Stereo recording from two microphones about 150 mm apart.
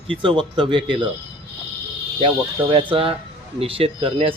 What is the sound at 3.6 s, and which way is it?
Speech, 40° right (ahead or behind).